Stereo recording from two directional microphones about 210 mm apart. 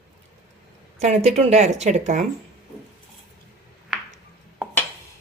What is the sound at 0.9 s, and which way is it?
Speech, 30° right (ahead or behind).